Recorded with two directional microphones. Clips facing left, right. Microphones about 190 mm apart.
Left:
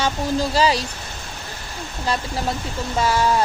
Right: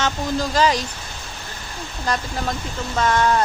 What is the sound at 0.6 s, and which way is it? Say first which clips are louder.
Speech: right 1 dB; 35° left (ahead or behind).